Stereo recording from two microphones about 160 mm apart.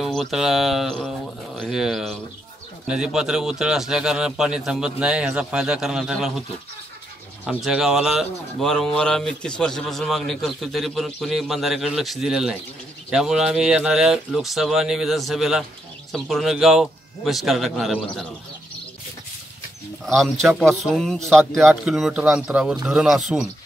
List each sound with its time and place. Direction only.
0.0 s speech: centre (ahead or behind)
7.4 s speech: 5° right (ahead or behind)
20.1 s speech: centre (ahead or behind)